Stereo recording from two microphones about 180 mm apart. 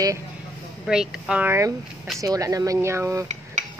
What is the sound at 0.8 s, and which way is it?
Speech, 5° right (ahead or behind).